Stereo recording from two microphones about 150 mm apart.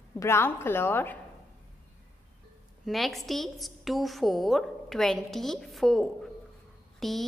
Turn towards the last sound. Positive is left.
turn(degrees=0)  # may be behind; listen again after turning